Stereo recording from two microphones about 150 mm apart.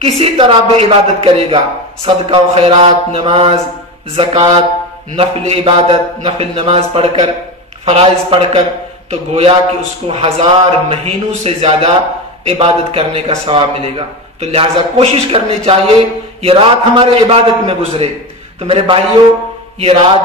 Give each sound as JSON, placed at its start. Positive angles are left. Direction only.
{"t": 0.0, "sound": "a man's voice", "side_deg": -40}